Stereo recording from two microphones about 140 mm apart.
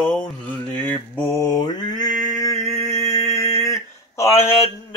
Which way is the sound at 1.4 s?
25° left (ahead or behind).